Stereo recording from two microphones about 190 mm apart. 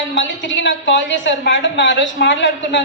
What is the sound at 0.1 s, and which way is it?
A woman's voice, 70° left (ahead or behind).